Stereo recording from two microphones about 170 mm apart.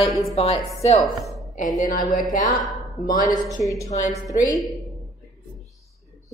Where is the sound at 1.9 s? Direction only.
50° left (ahead or behind).